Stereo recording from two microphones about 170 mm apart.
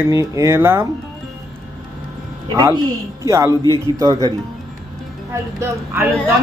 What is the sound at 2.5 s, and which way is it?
A woman's voice, 20° right (ahead or behind).